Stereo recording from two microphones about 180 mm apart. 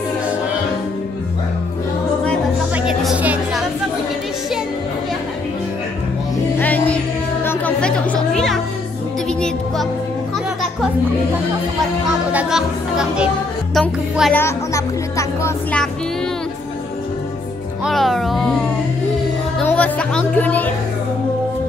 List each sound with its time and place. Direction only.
2.7 s music: 5° right (ahead or behind)
6.6 s music: 10° left (ahead or behind)
12.3 s music: 5° right (ahead or behind)
14.3 s music: 15° left (ahead or behind)
17.8 s music: centre (ahead or behind)
19.6 s music: 10° left (ahead or behind)